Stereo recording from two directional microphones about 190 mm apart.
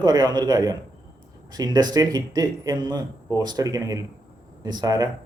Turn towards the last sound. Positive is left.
turn(degrees=-20)  # may be behind; listen again after turning